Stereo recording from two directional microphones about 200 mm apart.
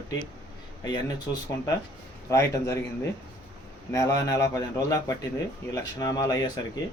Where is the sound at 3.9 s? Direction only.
15° left (ahead or behind).